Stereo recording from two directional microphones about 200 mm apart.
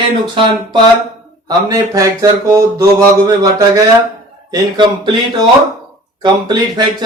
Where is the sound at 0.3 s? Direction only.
25° right (ahead or behind).